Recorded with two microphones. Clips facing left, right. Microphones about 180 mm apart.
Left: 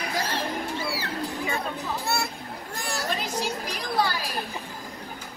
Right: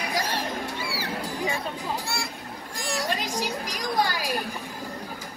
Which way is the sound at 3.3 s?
15° right (ahead or behind).